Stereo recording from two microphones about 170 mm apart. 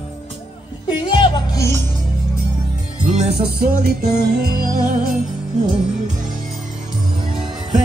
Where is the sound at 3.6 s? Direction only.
65° right (ahead or behind).